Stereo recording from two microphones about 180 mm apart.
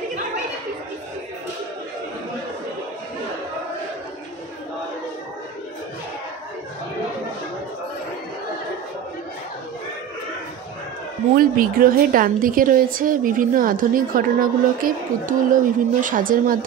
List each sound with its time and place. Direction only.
11.3 s a woman's voice: 50° right (ahead or behind)